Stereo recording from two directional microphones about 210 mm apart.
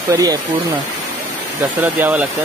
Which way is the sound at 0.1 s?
15° right (ahead or behind).